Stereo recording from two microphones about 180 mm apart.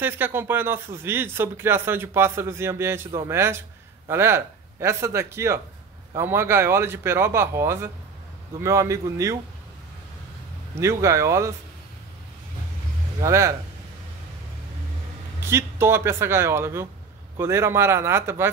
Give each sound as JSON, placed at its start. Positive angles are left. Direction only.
{"t": 0.0, "sound": "speech", "side_deg": -10}
{"t": 10.8, "sound": "speech", "side_deg": -15}
{"t": 13.2, "sound": "speech", "side_deg": -15}
{"t": 15.4, "sound": "speech", "side_deg": -15}